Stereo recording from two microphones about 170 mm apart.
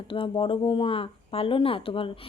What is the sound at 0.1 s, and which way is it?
Speech, 30° left (ahead or behind).